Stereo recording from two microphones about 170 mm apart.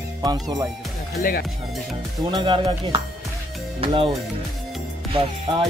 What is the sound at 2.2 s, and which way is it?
Speech, 30° right (ahead or behind).